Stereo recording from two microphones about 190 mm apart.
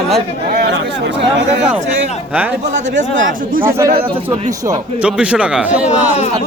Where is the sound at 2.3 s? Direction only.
10° right (ahead or behind).